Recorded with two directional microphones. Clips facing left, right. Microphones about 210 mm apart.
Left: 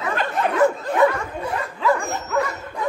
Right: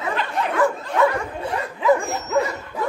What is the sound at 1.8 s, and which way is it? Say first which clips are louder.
Dog: right 3 dB; 20° right (ahead or behind).